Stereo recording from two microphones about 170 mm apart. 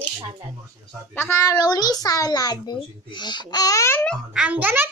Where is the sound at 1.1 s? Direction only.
15° left (ahead or behind).